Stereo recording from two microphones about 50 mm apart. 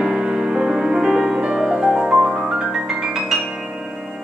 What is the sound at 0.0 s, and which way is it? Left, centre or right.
Music, centre.